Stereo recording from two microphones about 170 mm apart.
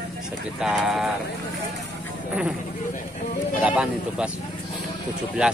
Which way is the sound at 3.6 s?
5° right (ahead or behind).